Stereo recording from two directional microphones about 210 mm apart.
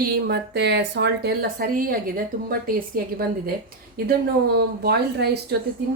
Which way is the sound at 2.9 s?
45° right (ahead or behind).